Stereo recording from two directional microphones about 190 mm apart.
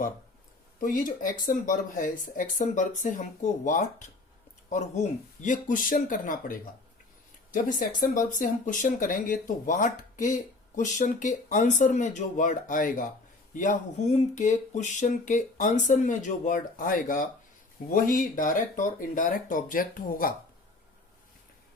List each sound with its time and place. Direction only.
0.8 s speech: 45° left (ahead or behind)